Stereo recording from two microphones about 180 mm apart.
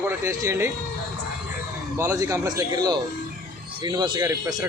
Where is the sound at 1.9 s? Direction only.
15° right (ahead or behind).